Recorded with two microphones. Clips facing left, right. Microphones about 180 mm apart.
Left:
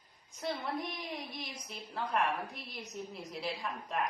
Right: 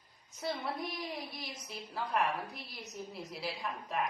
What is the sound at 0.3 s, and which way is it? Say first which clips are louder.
A woman's voice: left 1 dB; centre (ahead or behind).